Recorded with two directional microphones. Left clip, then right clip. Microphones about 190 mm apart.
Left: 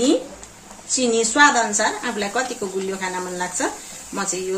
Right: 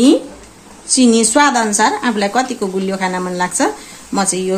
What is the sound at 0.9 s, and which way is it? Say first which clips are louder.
A woman's voice: right 6 dB; 55° right (ahead or behind).